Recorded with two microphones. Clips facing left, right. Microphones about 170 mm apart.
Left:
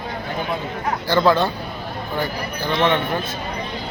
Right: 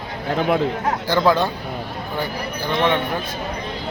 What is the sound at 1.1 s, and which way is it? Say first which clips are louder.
Speech: left 1 dB; 10° right (ahead or behind).